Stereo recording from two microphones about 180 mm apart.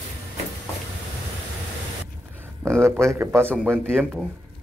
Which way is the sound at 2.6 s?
15° right (ahead or behind).